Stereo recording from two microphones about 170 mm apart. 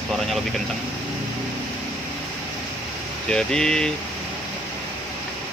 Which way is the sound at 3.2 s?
5° left (ahead or behind).